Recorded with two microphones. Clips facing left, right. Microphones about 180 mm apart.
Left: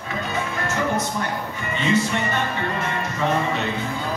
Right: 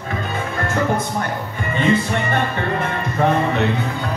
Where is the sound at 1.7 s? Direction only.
55° right (ahead or behind).